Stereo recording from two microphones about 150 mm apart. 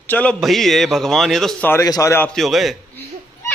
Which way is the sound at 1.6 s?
20° left (ahead or behind).